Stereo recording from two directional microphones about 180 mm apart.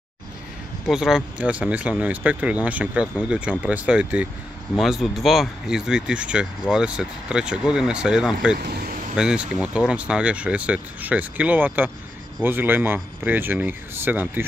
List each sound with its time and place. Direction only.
0.8 s speech: 5° right (ahead or behind)
8.6 s speech: 55° right (ahead or behind)
9.1 s speech: 5° right (ahead or behind)